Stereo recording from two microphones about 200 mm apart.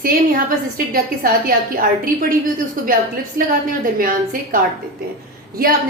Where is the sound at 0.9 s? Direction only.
45° right (ahead or behind).